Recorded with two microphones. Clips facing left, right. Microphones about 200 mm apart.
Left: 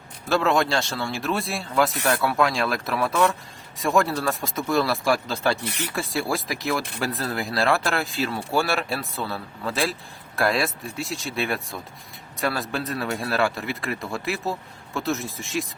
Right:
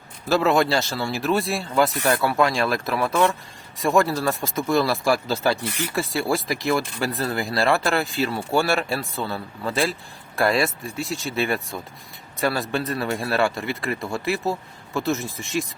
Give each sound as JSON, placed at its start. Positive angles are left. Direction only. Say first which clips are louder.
{"t": 0.3, "sound": "speech", "louder": "right 2 dB", "side_deg": -5}